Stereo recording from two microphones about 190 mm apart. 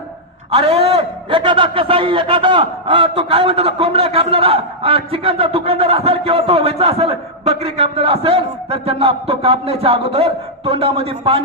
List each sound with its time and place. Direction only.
0.5 s a man's voice: 30° right (ahead or behind)